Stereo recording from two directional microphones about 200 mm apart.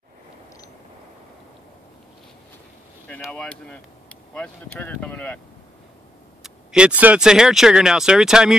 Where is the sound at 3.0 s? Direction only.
5° left (ahead or behind).